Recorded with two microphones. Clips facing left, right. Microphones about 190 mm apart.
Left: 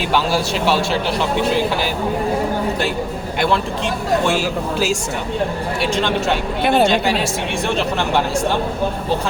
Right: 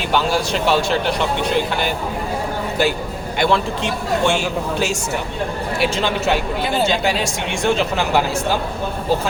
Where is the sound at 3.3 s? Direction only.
Centre (ahead or behind).